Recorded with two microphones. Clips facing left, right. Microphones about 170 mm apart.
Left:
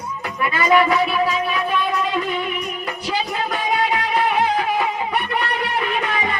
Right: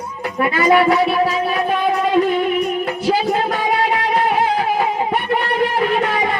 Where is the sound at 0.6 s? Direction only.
40° right (ahead or behind).